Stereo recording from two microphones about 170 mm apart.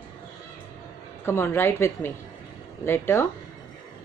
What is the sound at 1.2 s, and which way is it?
A woman's voice, 15° left (ahead or behind).